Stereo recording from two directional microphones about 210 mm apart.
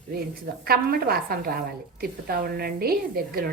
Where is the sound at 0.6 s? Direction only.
45° right (ahead or behind).